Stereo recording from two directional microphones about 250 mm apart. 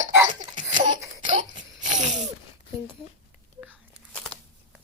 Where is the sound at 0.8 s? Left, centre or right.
Centre.